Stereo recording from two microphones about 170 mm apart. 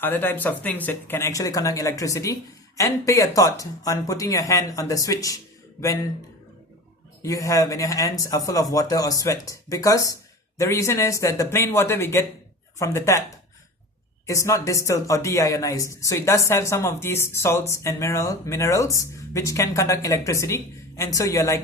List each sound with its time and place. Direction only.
0.0 s speech: 10° left (ahead or behind)
7.2 s speech: 20° left (ahead or behind)
14.3 s speech: 15° left (ahead or behind)